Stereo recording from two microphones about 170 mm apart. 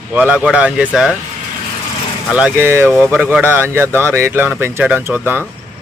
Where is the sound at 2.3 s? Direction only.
10° right (ahead or behind).